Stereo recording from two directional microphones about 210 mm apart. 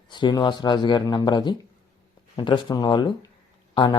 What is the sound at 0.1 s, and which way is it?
Speech, 20° left (ahead or behind).